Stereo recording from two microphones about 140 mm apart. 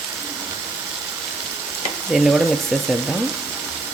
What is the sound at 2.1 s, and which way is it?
Speech, centre (ahead or behind).